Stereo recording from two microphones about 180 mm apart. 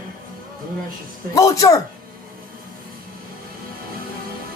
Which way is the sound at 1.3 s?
20° left (ahead or behind).